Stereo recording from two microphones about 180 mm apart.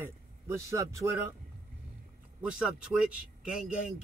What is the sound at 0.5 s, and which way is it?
Speech, 15° right (ahead or behind).